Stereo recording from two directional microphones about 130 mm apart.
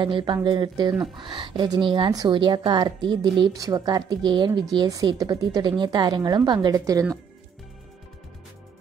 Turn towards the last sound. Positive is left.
turn(degrees=-25)  # may be behind; listen again after turning